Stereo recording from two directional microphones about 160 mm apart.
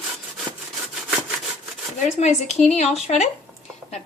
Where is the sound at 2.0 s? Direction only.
45° left (ahead or behind).